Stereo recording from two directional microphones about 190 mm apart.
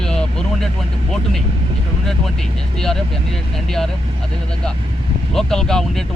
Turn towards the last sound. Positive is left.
turn(degrees=5)  # may be behind; listen again after turning